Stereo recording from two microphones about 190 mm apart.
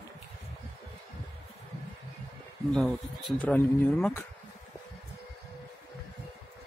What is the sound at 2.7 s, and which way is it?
Speech, centre (ahead or behind).